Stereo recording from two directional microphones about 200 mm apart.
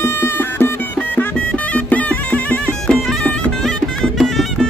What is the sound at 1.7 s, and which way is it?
Music, 5° left (ahead or behind).